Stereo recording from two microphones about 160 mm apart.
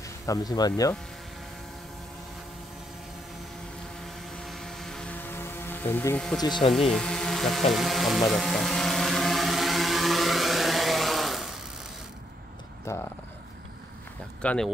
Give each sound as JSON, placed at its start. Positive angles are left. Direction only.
{"t": 0.3, "sound": "speech", "side_deg": 25}
{"t": 4.0, "sound": "vehicle", "side_deg": 0}
{"t": 6.7, "sound": "speech", "side_deg": 0}
{"t": 7.7, "sound": "vehicle", "side_deg": 0}
{"t": 12.9, "sound": "speech", "side_deg": 20}
{"t": 14.4, "sound": "speech", "side_deg": 10}